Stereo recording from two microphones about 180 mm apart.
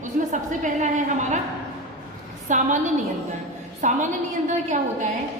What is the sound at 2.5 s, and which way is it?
A woman's voice, 45° right (ahead or behind).